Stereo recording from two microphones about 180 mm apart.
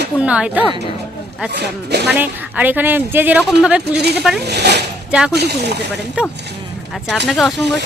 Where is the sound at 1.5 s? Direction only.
70° right (ahead or behind).